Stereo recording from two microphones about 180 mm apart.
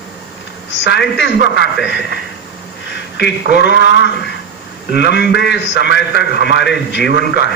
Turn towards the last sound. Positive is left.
turn(degrees=70)  # may be behind; listen again after turning